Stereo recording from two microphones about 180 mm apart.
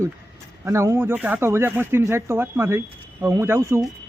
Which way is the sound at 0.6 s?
15° right (ahead or behind).